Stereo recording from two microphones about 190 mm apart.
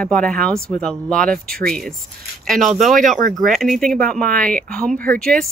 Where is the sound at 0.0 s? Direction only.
5° left (ahead or behind).